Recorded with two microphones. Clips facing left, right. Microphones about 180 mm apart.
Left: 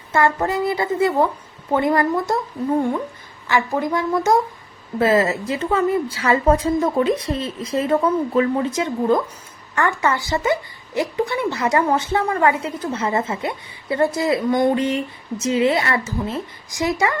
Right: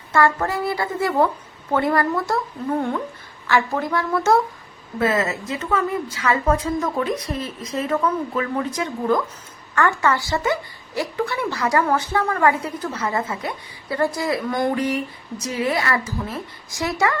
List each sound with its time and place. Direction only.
0.1 s a woman's voice: 20° left (ahead or behind)
4.9 s a woman's voice: 30° left (ahead or behind)